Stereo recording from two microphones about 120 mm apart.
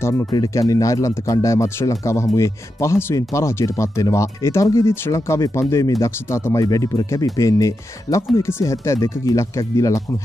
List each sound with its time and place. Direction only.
0.0 s speech: 25° left (ahead or behind)